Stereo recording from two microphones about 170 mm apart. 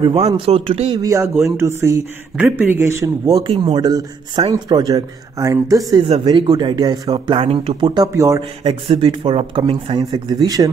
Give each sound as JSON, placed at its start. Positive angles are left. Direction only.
{"t": 0.0, "sound": "speech", "side_deg": -35}
{"t": 0.9, "sound": "speech", "side_deg": -20}
{"t": 7.3, "sound": "speech", "side_deg": -35}
{"t": 8.6, "sound": "speech", "side_deg": -35}